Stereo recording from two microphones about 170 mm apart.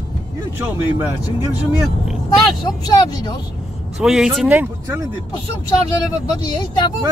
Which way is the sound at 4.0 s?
5° right (ahead or behind).